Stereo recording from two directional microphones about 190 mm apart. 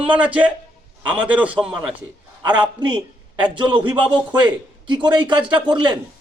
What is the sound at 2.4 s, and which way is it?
A man's voice, 25° right (ahead or behind).